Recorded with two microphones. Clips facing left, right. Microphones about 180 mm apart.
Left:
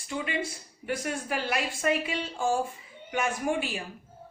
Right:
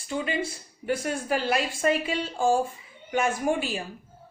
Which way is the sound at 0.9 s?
35° right (ahead or behind).